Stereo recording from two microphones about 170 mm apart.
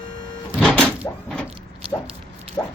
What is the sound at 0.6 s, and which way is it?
Music, 5° left (ahead or behind).